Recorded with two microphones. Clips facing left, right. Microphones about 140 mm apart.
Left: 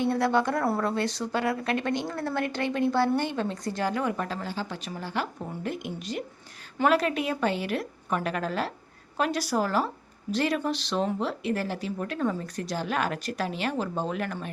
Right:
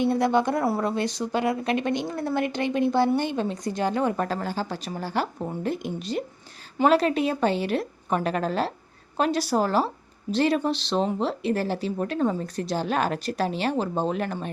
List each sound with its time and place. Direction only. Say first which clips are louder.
0.0 s a woman's voice: right 3 dB; 20° right (ahead or behind)
4.2 s speech: right 5 dB; 45° right (ahead or behind); by 14.3 s 30° right (ahead or behind)